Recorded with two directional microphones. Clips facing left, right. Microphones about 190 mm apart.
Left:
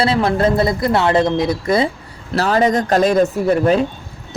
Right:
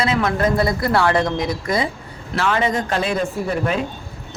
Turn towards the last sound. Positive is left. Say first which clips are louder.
# left 7 dB
turn(degrees=40)  # may be behind; listen again after turning